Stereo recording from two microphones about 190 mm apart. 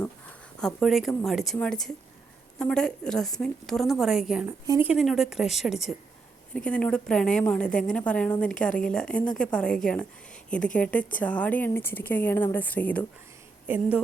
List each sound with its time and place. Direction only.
0.0 s a woman's voice: 5° left (ahead or behind)
4.6 s speech: 20° right (ahead or behind)
4.9 s a woman's voice: centre (ahead or behind)
13.7 s speech: 5° right (ahead or behind)